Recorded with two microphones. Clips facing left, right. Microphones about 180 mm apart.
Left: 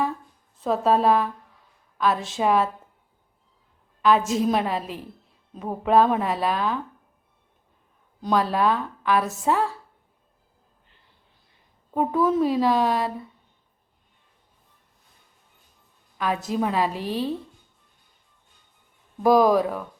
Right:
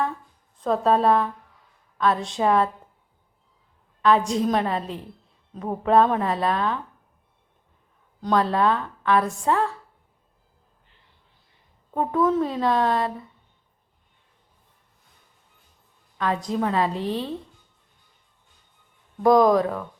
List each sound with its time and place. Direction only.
0.6 s a woman's voice: centre (ahead or behind)
4.0 s a woman's voice: 5° left (ahead or behind)
8.2 s a woman's voice: 10° left (ahead or behind)
11.9 s a woman's voice: 10° left (ahead or behind)
16.1 s a woman's voice: 10° left (ahead or behind)
16.9 s a woman's voice: 25° right (ahead or behind)
19.2 s a woman's voice: 5° left (ahead or behind)